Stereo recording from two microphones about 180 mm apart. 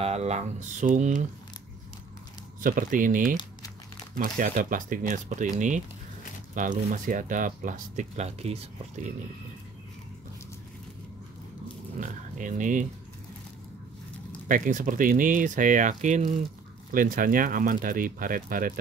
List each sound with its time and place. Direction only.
0.0 s speech: 35° right (ahead or behind)
2.6 s speech: 50° right (ahead or behind)
12.0 s speech: 45° right (ahead or behind)
14.5 s speech: 45° right (ahead or behind)